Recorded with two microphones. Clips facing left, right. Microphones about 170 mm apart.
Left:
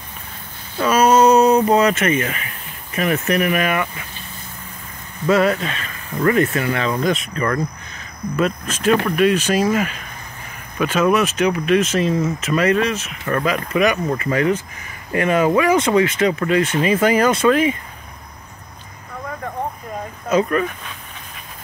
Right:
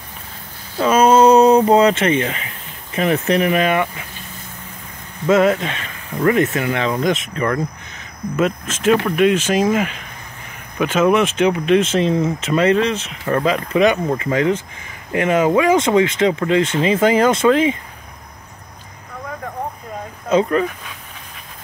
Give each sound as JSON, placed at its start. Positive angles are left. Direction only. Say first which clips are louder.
{"t": 0.7, "sound": "speech", "louder": "right 2 dB", "side_deg": -25}
{"t": 5.2, "sound": "speech", "louder": "right 2 dB", "side_deg": -20}
{"t": 20.2, "sound": "speech", "louder": "right 2 dB", "side_deg": -20}